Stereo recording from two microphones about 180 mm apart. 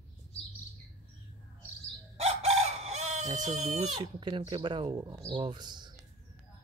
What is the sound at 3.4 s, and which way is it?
Speech, 40° right (ahead or behind).